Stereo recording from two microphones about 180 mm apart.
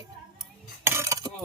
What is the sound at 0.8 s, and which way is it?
Cutlery, 15° right (ahead or behind).